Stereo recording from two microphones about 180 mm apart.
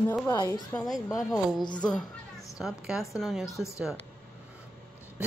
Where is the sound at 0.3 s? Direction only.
20° left (ahead or behind).